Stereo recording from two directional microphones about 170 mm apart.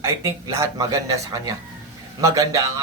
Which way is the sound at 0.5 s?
20° right (ahead or behind).